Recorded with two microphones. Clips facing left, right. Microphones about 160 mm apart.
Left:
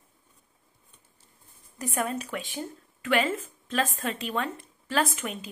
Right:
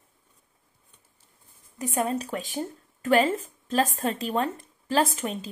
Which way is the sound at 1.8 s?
30° right (ahead or behind).